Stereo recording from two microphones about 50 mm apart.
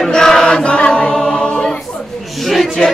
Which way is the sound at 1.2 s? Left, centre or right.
Centre.